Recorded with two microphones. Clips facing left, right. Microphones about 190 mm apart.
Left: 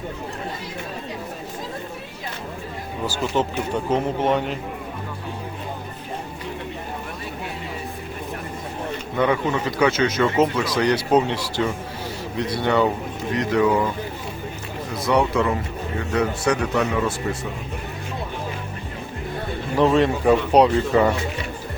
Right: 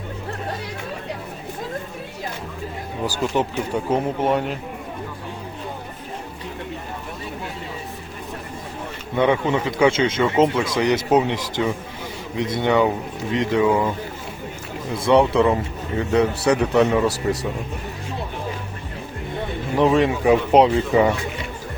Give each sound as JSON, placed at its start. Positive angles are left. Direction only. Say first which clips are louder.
{"t": 3.8, "sound": "speech", "louder": "even", "side_deg": -10}
{"t": 9.1, "sound": "speech", "louder": "right 2 dB", "side_deg": -25}
{"t": 15.0, "sound": "speech", "louder": "right 4 dB", "side_deg": -25}
{"t": 19.7, "sound": "speech", "louder": "even", "side_deg": -15}